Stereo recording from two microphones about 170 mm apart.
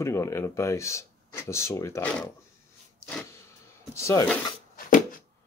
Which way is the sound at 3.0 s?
10° left (ahead or behind).